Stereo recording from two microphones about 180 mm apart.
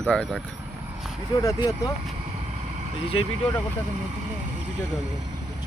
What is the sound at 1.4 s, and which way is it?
Speech, 20° left (ahead or behind).